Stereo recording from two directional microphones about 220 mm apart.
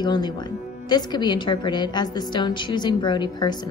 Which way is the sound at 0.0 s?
20° left (ahead or behind).